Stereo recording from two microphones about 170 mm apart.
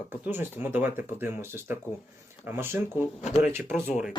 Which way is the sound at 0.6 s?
10° right (ahead or behind).